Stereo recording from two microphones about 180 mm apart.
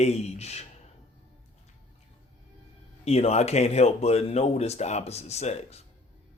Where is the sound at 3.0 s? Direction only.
35° left (ahead or behind).